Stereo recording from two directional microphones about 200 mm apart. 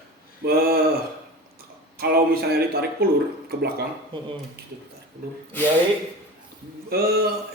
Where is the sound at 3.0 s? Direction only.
50° right (ahead or behind).